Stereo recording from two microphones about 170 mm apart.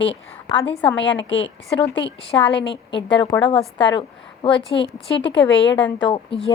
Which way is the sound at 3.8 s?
30° left (ahead or behind).